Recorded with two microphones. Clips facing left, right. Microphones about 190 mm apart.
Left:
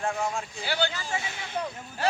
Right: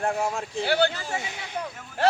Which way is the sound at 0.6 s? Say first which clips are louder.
Right 8 dB; 60° right (ahead or behind).